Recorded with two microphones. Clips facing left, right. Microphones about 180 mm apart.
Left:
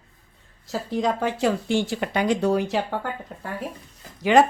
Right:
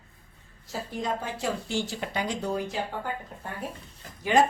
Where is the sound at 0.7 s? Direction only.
85° left.